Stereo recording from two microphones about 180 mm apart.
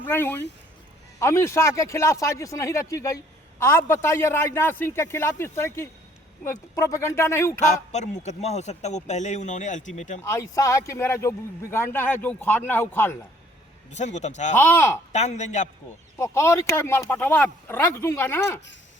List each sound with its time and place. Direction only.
0.0 s speech: 10° left (ahead or behind)
7.7 s a man's voice: 40° left (ahead or behind)
10.2 s speech: 15° left (ahead or behind)
13.9 s a man's voice: 40° left (ahead or behind)
14.5 s speech: 10° left (ahead or behind)
15.1 s a man's voice: 40° left (ahead or behind)
16.1 s speech: 15° left (ahead or behind)